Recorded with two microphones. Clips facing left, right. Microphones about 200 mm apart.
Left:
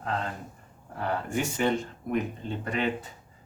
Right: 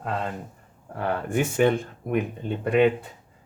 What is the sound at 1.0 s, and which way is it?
Speech, 55° right (ahead or behind).